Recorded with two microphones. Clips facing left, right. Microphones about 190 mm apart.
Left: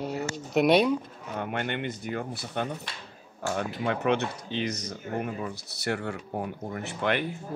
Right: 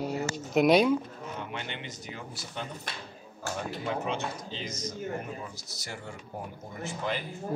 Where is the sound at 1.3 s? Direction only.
55° left (ahead or behind).